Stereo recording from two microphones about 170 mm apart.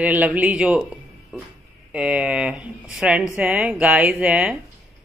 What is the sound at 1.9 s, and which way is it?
Speech, 5° right (ahead or behind).